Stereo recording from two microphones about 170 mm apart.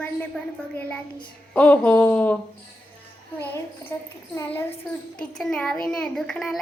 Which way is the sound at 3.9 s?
20° left (ahead or behind).